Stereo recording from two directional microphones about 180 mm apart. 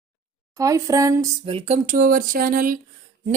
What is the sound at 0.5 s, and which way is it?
Speech, 15° right (ahead or behind).